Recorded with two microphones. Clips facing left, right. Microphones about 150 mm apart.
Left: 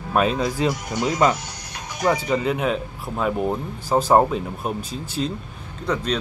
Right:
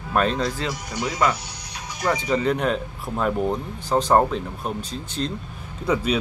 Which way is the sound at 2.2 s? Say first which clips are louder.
Even; 5° left (ahead or behind).